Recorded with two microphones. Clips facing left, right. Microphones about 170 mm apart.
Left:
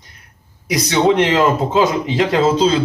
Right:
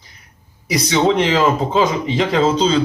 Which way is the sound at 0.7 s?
5° left (ahead or behind).